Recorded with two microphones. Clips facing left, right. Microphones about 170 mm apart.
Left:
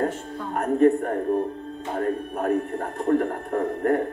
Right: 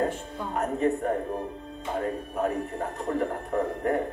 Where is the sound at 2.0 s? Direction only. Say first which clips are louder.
Left 3 dB; 55° left (ahead or behind).